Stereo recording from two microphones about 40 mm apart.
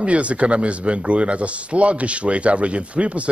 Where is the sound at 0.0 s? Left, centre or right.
Right.